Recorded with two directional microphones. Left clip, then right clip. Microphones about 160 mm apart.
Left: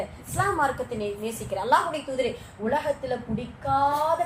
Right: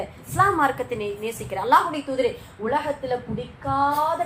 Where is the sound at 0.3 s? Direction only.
20° right (ahead or behind).